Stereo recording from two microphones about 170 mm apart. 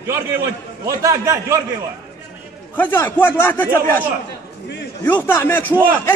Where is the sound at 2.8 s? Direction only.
10° left (ahead or behind).